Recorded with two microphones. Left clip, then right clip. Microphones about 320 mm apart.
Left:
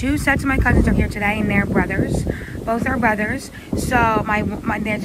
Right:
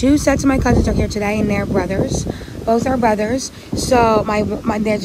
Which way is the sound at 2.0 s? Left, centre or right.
Left.